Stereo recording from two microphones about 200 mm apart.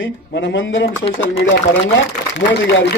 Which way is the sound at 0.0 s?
70° left (ahead or behind).